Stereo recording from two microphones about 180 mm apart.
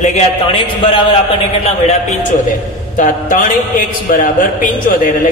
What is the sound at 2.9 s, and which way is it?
A man's voice, 45° left (ahead or behind).